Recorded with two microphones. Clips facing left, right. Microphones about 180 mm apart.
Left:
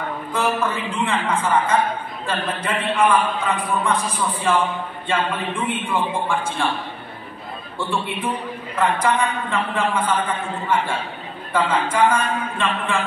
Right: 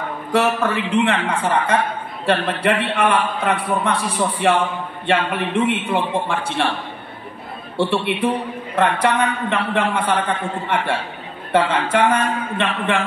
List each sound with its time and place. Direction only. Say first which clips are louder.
0.3 s a man's voice: right 4 dB; 70° right (ahead or behind)
2.2 s a man's voice: right 7 dB; 75° right (ahead or behind)
7.7 s a man's voice: right 6 dB; 70° right (ahead or behind)